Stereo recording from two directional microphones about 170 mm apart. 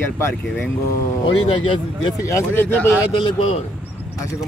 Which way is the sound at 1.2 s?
35° left (ahead or behind).